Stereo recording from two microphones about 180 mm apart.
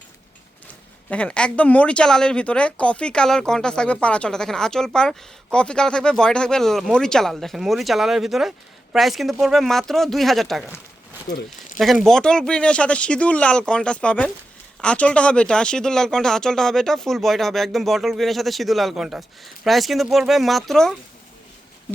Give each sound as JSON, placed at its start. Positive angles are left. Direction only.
{"t": 0.7, "sound": "speech", "side_deg": 5}
{"t": 11.3, "sound": "speech", "side_deg": 20}
{"t": 11.8, "sound": "speech", "side_deg": 0}